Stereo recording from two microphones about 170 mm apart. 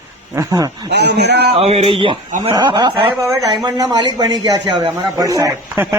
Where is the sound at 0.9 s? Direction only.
90° right.